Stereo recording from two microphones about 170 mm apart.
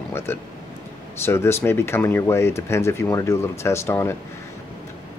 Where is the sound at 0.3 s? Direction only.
15° left (ahead or behind).